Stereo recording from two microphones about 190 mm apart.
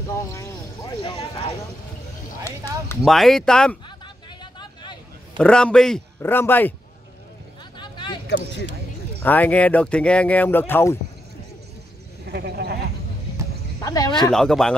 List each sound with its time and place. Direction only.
0.3 s speech: 20° left (ahead or behind)
3.0 s speech: centre (ahead or behind)
4.4 s vehicle: 25° left (ahead or behind)
5.4 s speech: 5° left (ahead or behind)
7.7 s a sound: 25° left (ahead or behind)
9.2 s speech: 10° left (ahead or behind)
12.3 s a sound: 60° right (ahead or behind)
13.8 s speech: 20° left (ahead or behind)
14.3 s speech: centre (ahead or behind)